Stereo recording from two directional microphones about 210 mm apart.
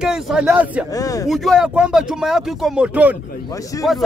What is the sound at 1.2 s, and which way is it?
A man's voice, centre (ahead or behind).